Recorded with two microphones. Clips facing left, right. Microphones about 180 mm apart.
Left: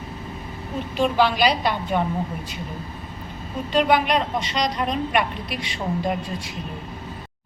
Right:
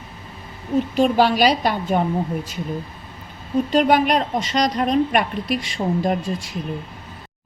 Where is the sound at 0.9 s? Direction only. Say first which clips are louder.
Right 2 dB; 45° right (ahead or behind).